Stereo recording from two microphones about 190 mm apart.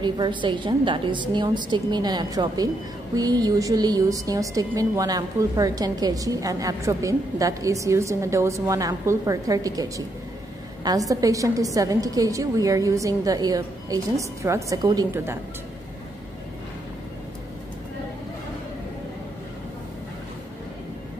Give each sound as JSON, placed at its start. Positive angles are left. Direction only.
{"t": 0.0, "sound": "a woman's voice", "side_deg": -25}
{"t": 11.1, "sound": "a woman's voice", "side_deg": -15}